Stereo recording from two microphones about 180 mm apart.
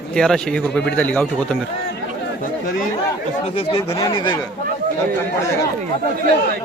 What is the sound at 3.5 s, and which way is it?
Speech, 30° left (ahead or behind).